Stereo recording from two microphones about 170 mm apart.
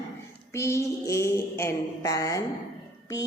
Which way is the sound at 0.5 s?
15° left (ahead or behind).